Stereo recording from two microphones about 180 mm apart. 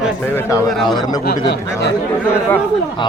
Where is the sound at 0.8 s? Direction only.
25° left (ahead or behind).